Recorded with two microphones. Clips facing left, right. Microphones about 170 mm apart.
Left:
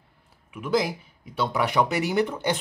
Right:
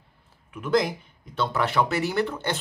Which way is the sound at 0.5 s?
5° left (ahead or behind).